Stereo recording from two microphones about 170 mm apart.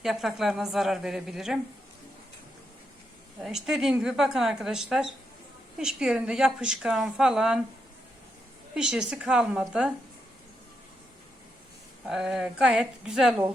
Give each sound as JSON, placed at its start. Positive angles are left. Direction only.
{"t": 0.0, "sound": "a woman's voice", "side_deg": 0}
{"t": 3.4, "sound": "a woman's voice", "side_deg": 0}
{"t": 8.7, "sound": "a woman's voice", "side_deg": -5}
{"t": 12.0, "sound": "a woman's voice", "side_deg": -5}